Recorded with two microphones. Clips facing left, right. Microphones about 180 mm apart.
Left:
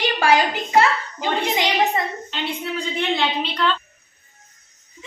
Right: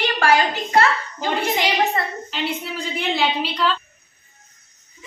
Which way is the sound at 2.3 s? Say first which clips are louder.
Even; 5° right (ahead or behind).